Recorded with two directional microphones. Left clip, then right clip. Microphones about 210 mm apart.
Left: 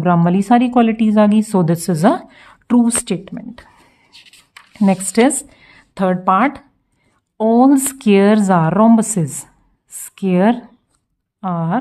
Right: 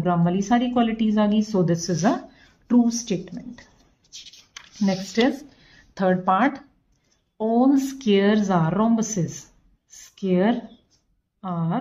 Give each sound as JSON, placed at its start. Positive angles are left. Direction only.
{"t": 0.0, "sound": "a woman's voice", "side_deg": 40}
{"t": 4.1, "sound": "a sound", "side_deg": 20}
{"t": 4.7, "sound": "a woman's voice", "side_deg": 40}
{"t": 5.6, "sound": "speech", "side_deg": 30}
{"t": 7.3, "sound": "a woman's voice", "side_deg": 40}